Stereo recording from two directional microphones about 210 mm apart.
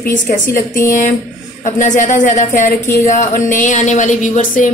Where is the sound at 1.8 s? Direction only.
35° left (ahead or behind).